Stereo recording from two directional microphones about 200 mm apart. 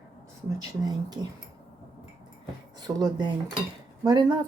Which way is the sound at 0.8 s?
20° right (ahead or behind).